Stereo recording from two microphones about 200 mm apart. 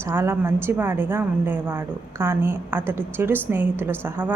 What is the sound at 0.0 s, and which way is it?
A woman's voice, 10° right (ahead or behind).